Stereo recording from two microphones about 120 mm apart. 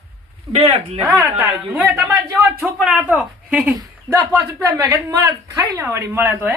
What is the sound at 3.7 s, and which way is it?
Speech, 25° right (ahead or behind).